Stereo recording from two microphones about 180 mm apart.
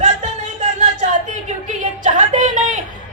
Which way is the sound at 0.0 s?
40° right (ahead or behind).